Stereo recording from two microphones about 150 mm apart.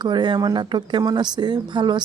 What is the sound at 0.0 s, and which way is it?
Speech, 30° right (ahead or behind).